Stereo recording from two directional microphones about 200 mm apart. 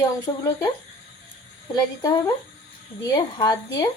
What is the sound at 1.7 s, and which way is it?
Speech, 20° left (ahead or behind).